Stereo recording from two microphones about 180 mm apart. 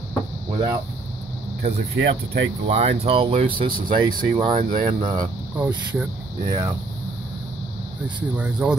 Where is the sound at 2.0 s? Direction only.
60° right (ahead or behind).